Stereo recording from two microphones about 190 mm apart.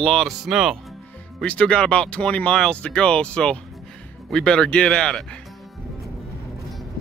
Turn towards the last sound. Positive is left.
turn(degrees=5)  # may be behind; listen again after turning